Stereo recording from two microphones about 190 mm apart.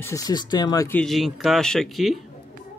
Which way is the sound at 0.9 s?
Centre (ahead or behind).